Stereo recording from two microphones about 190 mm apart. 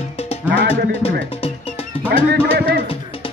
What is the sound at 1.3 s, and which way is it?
Music, 30° left (ahead or behind).